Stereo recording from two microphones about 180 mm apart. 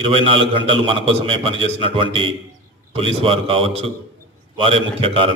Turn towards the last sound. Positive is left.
turn(degrees=-30)  # may be behind; listen again after turning